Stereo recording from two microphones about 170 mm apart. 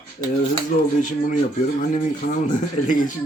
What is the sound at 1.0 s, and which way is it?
Speech, 50° left (ahead or behind).